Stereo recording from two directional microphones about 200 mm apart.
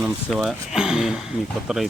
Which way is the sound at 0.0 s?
Centre (ahead or behind).